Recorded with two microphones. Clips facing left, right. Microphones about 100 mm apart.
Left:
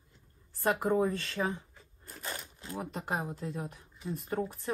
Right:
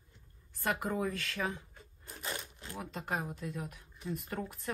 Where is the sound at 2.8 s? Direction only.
30° left (ahead or behind).